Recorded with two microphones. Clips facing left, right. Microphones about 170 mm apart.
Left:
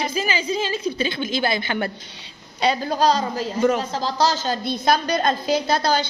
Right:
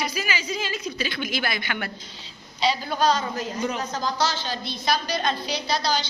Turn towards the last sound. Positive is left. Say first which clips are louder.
# left 5 dB
turn(degrees=50)  # may be behind; listen again after turning